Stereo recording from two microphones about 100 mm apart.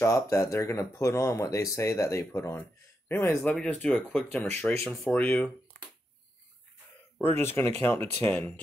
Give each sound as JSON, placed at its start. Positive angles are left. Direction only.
{"t": 0.0, "sound": "speech", "side_deg": 30}
{"t": 3.4, "sound": "speech", "side_deg": 10}
{"t": 7.2, "sound": "speech", "side_deg": 20}